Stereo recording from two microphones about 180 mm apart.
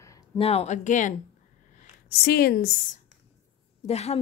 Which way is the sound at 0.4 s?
35° left (ahead or behind).